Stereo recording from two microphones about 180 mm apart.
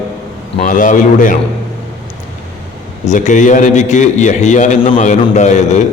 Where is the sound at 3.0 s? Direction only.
45° left (ahead or behind).